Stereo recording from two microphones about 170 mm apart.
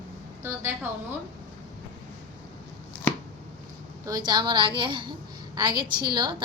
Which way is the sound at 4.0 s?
25° right (ahead or behind).